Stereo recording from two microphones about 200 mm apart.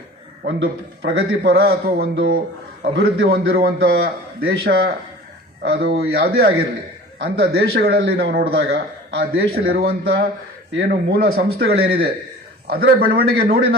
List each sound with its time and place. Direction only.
0.4 s a man's voice: 60° right (ahead or behind)
5.9 s a man's voice: 50° right (ahead or behind)